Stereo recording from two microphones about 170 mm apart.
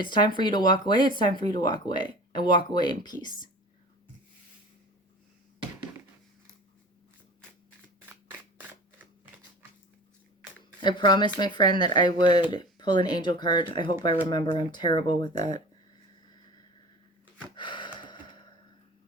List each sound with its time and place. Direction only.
0.0 s speech: 25° left (ahead or behind)
8.1 s a sound: 10° right (ahead or behind)
10.8 s speech: 25° left (ahead or behind)
17.6 s gasp: 25° left (ahead or behind)